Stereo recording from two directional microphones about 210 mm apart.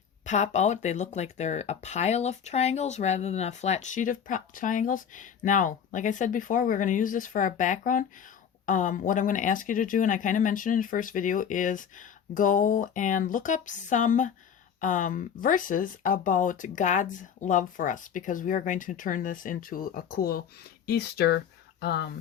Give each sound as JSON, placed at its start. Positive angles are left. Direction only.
{"t": 0.3, "sound": "speech", "side_deg": 35}